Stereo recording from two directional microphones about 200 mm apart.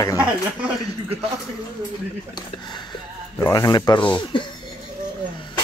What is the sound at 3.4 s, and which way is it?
Speech, 15° left (ahead or behind).